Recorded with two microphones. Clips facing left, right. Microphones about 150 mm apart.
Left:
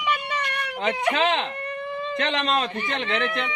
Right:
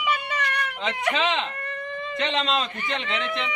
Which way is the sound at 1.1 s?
50° left (ahead or behind).